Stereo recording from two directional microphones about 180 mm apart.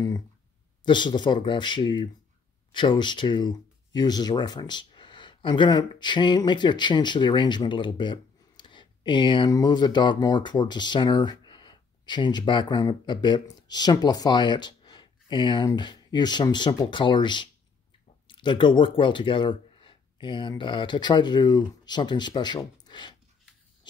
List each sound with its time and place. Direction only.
0.8 s speech: 25° left (ahead or behind)